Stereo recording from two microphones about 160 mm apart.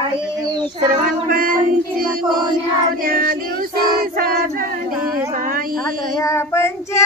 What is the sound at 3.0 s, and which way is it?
Child singing, 65° right (ahead or behind).